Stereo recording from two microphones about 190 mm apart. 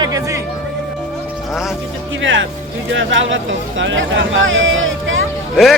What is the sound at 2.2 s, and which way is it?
Speech, 80° right.